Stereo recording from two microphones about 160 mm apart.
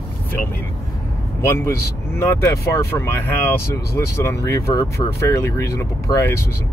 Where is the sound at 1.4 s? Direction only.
15° left (ahead or behind).